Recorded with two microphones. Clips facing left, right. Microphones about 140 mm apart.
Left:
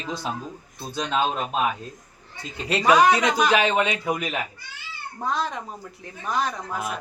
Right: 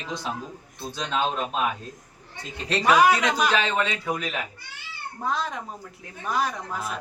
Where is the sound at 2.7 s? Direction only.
10° left (ahead or behind).